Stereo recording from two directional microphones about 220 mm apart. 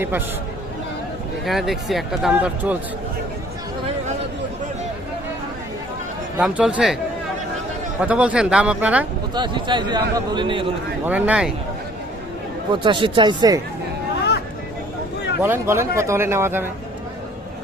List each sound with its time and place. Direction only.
1.5 s speech: centre (ahead or behind)
6.4 s speech: 5° right (ahead or behind)
8.0 s speech: 5° right (ahead or behind)
9.3 s a man's voice: 20° right (ahead or behind)
11.0 s speech: 5° right (ahead or behind)
12.7 s a man's voice: 20° right (ahead or behind)
15.4 s speech: 10° right (ahead or behind)